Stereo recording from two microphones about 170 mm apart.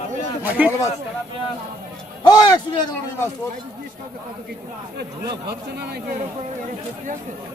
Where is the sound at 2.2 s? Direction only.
25° left (ahead or behind).